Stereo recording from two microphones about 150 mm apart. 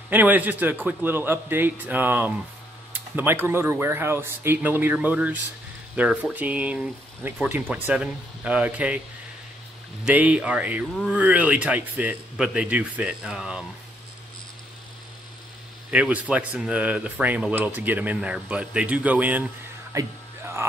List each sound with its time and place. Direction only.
0.1 s speech: 10° right (ahead or behind)
10.0 s speech: 10° right (ahead or behind)
15.9 s speech: 10° right (ahead or behind)
20.0 s music: 15° right (ahead or behind)